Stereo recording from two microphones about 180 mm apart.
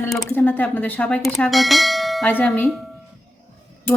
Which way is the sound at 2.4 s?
5° left (ahead or behind).